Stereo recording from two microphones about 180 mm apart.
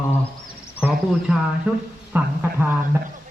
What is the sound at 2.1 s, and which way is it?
Speech, 10° right (ahead or behind).